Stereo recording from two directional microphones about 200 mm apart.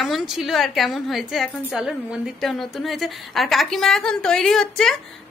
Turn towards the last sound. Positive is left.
turn(degrees=0)  # may be behind; listen again after turning